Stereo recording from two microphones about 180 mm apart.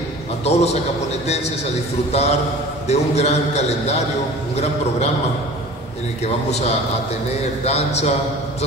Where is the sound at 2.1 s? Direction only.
35° left (ahead or behind).